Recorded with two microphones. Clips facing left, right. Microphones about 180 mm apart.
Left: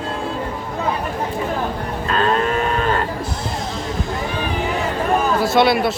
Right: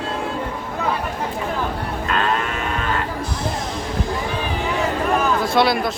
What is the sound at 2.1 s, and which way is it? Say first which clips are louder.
Moo: left 5 dB; 35° left (ahead or behind).